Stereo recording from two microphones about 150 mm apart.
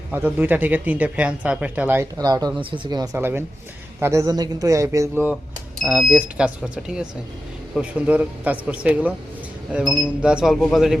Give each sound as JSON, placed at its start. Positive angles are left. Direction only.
{"t": 0.1, "sound": "a man's voice", "side_deg": -15}